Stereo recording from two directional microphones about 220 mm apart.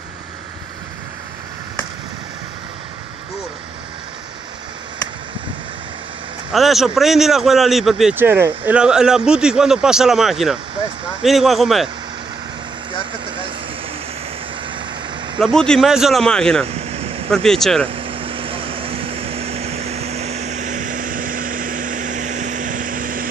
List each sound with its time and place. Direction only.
6.5 s a man's voice: centre (ahead or behind)
15.3 s a man's voice: centre (ahead or behind)
16.6 s a sound: 25° right (ahead or behind)
17.3 s a man's voice: centre (ahead or behind)
17.9 s vehicle: 25° right (ahead or behind)